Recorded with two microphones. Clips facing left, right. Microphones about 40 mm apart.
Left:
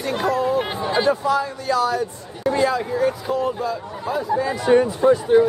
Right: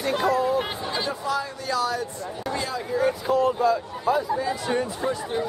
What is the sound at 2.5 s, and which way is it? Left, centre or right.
Speech, left.